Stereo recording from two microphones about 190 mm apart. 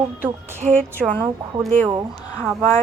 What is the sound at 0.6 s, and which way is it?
Speech, 45° right (ahead or behind).